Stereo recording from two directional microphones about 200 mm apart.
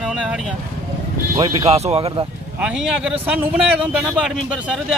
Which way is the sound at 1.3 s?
30° right (ahead or behind).